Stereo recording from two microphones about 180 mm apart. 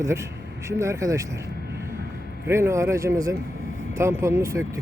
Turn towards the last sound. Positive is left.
turn(degrees=-15)  # may be behind; listen again after turning